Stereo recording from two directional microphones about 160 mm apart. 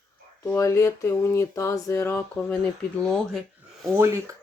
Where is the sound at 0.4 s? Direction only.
15° left (ahead or behind).